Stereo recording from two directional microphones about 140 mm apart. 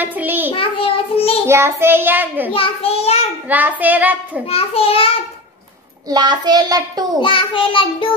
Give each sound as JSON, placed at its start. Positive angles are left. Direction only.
{"t": 0.0, "sound": "a sound", "side_deg": -10}
{"t": 0.5, "sound": "child singing", "side_deg": 40}
{"t": 1.5, "sound": "child singing", "side_deg": -15}
{"t": 2.5, "sound": "a child's voice", "side_deg": 45}
{"t": 3.4, "sound": "child singing", "side_deg": -10}
{"t": 4.5, "sound": "a child's voice", "side_deg": 45}
{"t": 6.0, "sound": "a child's voice", "side_deg": -30}
{"t": 7.2, "sound": "a child's voice", "side_deg": 40}